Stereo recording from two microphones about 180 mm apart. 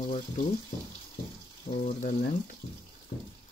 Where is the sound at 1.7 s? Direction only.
45° left (ahead or behind).